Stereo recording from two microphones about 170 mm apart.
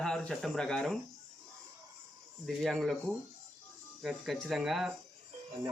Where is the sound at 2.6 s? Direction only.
Centre (ahead or behind).